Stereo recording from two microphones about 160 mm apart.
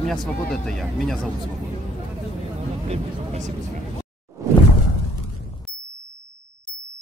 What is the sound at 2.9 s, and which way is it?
Speech, 50° right (ahead or behind).